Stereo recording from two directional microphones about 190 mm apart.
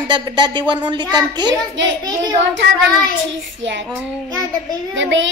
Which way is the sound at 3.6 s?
75° right (ahead or behind).